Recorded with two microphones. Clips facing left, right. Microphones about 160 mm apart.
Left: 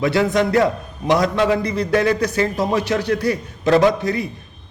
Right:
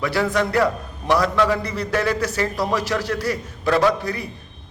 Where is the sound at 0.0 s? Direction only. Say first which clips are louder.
Left 4 dB; 20° left (ahead or behind).